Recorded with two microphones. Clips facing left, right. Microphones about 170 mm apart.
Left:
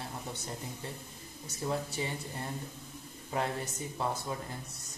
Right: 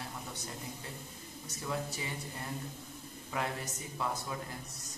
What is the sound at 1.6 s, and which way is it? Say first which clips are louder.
Speech: left 4 dB; 30° left (ahead or behind).